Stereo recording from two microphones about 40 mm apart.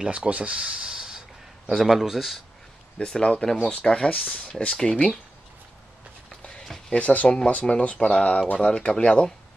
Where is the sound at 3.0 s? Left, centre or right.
Left.